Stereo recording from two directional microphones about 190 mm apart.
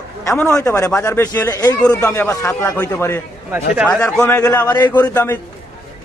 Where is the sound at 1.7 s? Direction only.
5° left (ahead or behind).